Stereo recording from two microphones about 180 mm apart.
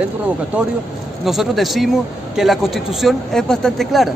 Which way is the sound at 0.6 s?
5° right (ahead or behind).